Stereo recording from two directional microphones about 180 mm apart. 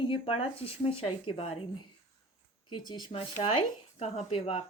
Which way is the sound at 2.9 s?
25° left (ahead or behind).